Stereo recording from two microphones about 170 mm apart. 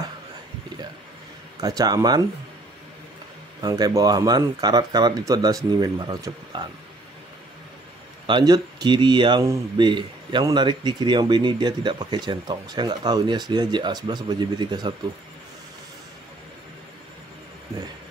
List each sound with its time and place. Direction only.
1.6 s speech: 20° right (ahead or behind)
3.6 s speech: 25° right (ahead or behind)
8.3 s speech: 25° right (ahead or behind)